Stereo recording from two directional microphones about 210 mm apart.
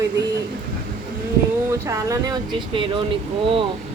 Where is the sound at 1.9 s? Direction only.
15° right (ahead or behind).